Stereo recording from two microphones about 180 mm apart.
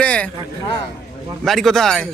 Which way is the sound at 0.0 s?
5° left (ahead or behind).